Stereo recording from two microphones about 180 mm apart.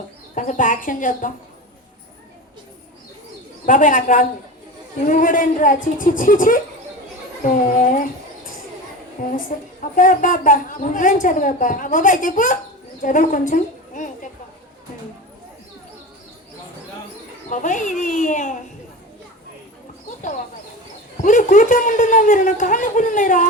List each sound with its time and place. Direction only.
0.3 s a woman's voice: 45° left (ahead or behind)
3.7 s a woman's voice: 45° left (ahead or behind)
9.2 s a woman's voice: 45° left (ahead or behind)
17.5 s a woman's voice: 45° left (ahead or behind)
21.2 s a woman's voice: 45° left (ahead or behind)